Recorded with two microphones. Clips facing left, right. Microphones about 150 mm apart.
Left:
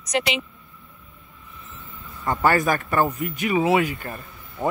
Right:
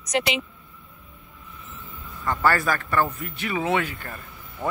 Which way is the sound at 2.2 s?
20° left (ahead or behind).